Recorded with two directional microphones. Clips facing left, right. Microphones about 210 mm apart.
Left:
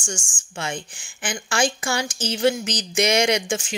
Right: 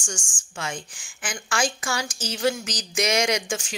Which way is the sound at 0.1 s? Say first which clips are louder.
Left 3 dB; 25° left (ahead or behind).